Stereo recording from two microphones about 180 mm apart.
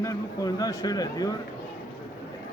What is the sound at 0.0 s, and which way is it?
Speech, 20° left (ahead or behind).